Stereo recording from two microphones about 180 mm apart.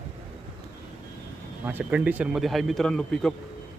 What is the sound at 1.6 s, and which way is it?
Speech, 10° right (ahead or behind).